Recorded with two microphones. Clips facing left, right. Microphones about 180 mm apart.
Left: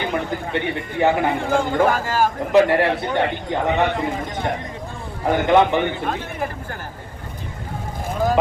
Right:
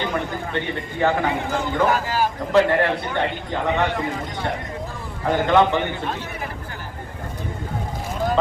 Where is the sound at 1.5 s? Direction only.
50° left (ahead or behind).